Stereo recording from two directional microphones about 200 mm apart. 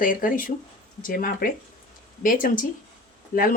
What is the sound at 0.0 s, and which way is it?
Speech, 45° left (ahead or behind).